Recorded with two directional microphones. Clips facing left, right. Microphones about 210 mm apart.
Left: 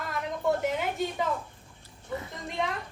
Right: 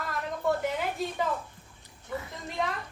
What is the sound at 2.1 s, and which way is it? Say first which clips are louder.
Speech: left 1 dB; 25° left (ahead or behind).